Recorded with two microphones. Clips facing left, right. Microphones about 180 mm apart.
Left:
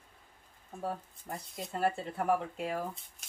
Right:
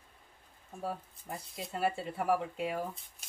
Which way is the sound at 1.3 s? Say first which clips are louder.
Left 1 dB; 5° right (ahead or behind).